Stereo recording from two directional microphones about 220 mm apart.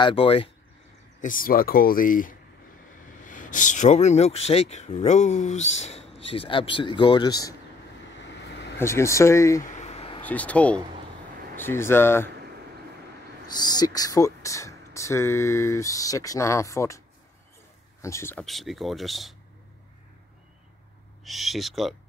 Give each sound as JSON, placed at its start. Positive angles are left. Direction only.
{"t": 0.0, "sound": "speech", "side_deg": 25}
{"t": 1.2, "sound": "speech", "side_deg": 40}
{"t": 8.5, "sound": "vehicle", "side_deg": 50}
{"t": 8.7, "sound": "speech", "side_deg": 10}
{"t": 9.6, "sound": "a sound", "side_deg": 35}
{"t": 10.2, "sound": "speech", "side_deg": 5}
{"t": 13.5, "sound": "speech", "side_deg": 20}
{"t": 18.0, "sound": "speech", "side_deg": 10}
{"t": 21.2, "sound": "speech", "side_deg": 0}